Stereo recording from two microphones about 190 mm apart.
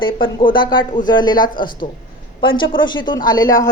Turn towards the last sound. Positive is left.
turn(degrees=20)  # may be behind; listen again after turning